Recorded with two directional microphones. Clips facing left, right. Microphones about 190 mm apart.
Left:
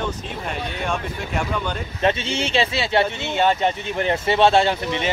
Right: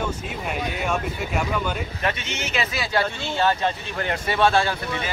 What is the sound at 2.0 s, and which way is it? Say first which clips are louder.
Speech: left 9 dB; 30° left (ahead or behind).